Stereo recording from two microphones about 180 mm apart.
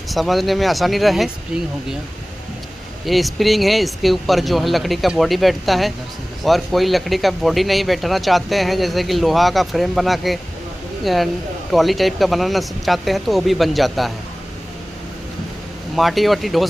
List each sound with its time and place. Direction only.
0.1 s speech: centre (ahead or behind)
3.1 s speech: centre (ahead or behind)
16.0 s speech: centre (ahead or behind)